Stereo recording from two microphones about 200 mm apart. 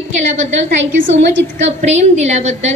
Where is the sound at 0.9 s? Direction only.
70° right (ahead or behind).